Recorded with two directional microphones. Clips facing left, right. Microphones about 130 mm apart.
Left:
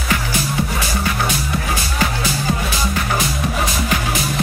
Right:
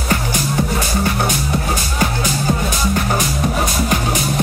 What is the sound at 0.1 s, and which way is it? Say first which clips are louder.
Music: right 2 dB; 45° right (ahead or behind).